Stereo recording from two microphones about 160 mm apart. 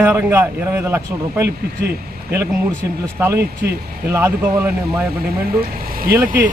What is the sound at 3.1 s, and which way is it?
Speech, 15° right (ahead or behind).